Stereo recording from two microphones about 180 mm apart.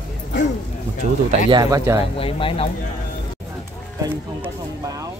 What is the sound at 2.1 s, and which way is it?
Speech, 30° left (ahead or behind).